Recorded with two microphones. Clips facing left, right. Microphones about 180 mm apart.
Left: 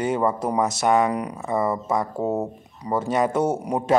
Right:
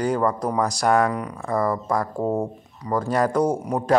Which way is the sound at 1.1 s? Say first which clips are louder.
Left 2 dB; 15° left (ahead or behind).